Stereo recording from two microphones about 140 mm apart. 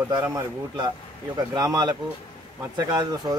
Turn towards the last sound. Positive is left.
turn(degrees=-25)  # may be behind; listen again after turning